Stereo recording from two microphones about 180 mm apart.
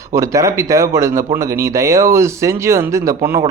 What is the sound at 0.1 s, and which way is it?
Speech, 15° right (ahead or behind).